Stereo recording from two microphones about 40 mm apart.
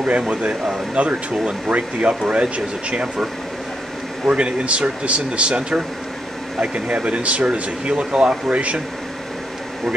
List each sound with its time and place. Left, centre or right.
0.0 s speech: right
4.3 s speech: right